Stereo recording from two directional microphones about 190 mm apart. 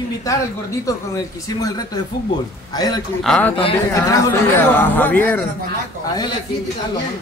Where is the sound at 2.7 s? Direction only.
20° left (ahead or behind).